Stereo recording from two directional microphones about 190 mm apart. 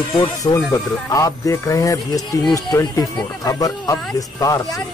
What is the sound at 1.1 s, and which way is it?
Music, 15° left (ahead or behind).